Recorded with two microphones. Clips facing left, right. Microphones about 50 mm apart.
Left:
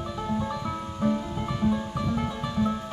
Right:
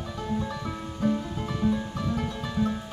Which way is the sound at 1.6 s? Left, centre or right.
Centre.